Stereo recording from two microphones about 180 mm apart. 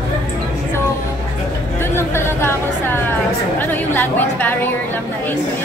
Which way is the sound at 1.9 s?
15° left (ahead or behind).